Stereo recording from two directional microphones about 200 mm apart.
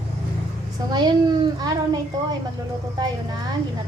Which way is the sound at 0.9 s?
20° right (ahead or behind).